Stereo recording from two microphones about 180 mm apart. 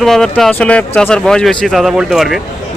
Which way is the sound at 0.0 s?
Centre (ahead or behind).